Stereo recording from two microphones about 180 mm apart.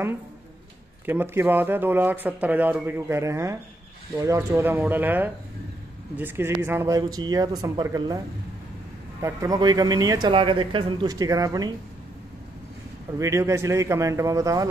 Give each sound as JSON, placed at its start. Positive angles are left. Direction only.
{"t": 1.0, "sound": "speech", "side_deg": -10}
{"t": 9.2, "sound": "speech", "side_deg": -20}
{"t": 13.2, "sound": "speech", "side_deg": -15}